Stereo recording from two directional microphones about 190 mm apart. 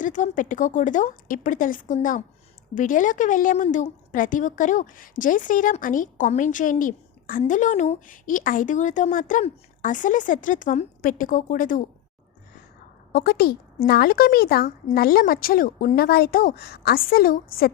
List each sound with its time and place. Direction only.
0.0 s a woman's voice: 40° left (ahead or behind)
13.1 s a woman's voice: 55° left (ahead or behind)